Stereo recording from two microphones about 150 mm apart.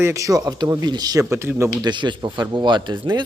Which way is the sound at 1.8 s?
30° right (ahead or behind).